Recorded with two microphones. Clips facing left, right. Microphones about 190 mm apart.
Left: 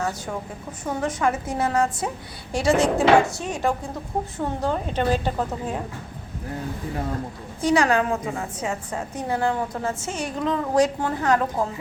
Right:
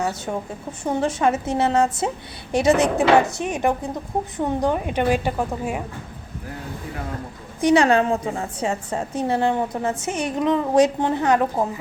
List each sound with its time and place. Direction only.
0.0 s a woman's voice: 20° right (ahead or behind)
7.6 s a woman's voice: 25° right (ahead or behind)